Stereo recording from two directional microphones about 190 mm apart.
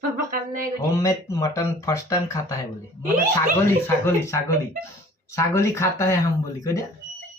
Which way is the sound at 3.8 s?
15° left (ahead or behind).